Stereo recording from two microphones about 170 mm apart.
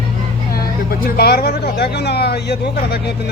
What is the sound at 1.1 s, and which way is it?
Speech, 70° left (ahead or behind).